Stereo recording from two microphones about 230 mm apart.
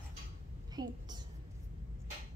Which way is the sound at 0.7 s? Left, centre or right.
Centre.